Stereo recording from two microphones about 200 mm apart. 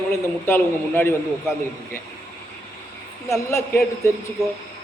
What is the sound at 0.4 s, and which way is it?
Speech, 10° left (ahead or behind).